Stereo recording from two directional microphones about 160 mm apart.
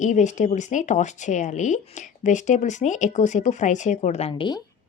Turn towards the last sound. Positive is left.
turn(degrees=30)  # may be behind; listen again after turning